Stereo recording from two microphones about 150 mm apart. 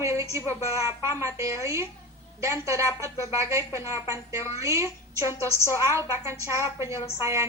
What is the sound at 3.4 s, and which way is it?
A woman's voice, 20° right (ahead or behind).